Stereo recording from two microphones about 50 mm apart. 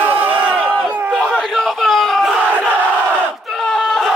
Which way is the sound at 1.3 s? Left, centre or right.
Centre.